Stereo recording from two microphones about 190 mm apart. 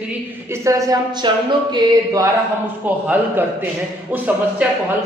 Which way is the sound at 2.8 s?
10° right (ahead or behind).